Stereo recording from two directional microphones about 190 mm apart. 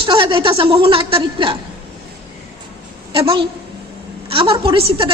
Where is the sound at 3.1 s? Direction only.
30° right (ahead or behind).